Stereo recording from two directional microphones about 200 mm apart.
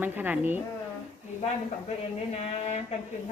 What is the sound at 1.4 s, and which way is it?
Speech, 35° left (ahead or behind).